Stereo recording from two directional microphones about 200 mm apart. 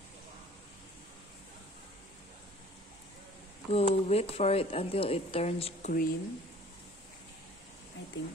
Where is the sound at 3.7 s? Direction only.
30° left (ahead or behind).